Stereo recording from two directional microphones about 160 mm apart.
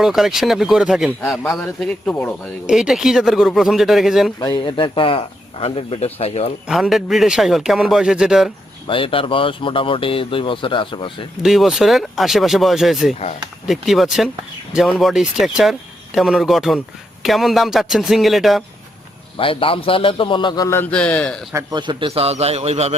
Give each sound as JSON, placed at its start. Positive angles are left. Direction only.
{"t": 0.0, "sound": "a man's voice", "side_deg": 0}
{"t": 2.6, "sound": "a man's voice", "side_deg": -5}
{"t": 4.4, "sound": "speech", "side_deg": 30}
{"t": 6.7, "sound": "a man's voice", "side_deg": 0}
{"t": 8.9, "sound": "speech", "side_deg": 35}
{"t": 11.4, "sound": "a man's voice", "side_deg": 0}
{"t": 19.4, "sound": "speech", "side_deg": 35}
{"t": 20.7, "sound": "a man's voice", "side_deg": 10}
{"t": 21.5, "sound": "a man's voice", "side_deg": -25}